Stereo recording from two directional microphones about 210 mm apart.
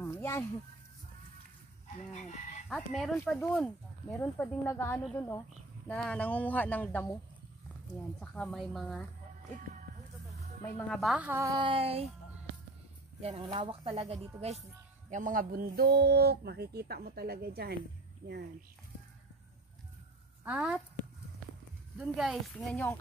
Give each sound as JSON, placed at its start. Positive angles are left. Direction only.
{"t": 0.0, "sound": "a sound", "side_deg": 10}
{"t": 2.0, "sound": "fowl", "side_deg": 35}
{"t": 2.7, "sound": "speech", "side_deg": 0}
{"t": 8.2, "sound": "speech", "side_deg": 5}
{"t": 10.6, "sound": "a woman's voice", "side_deg": 0}
{"t": 13.2, "sound": "speech", "side_deg": -30}
{"t": 15.0, "sound": "speech", "side_deg": -40}
{"t": 20.4, "sound": "a woman's voice", "side_deg": -5}
{"t": 21.9, "sound": "speech", "side_deg": -5}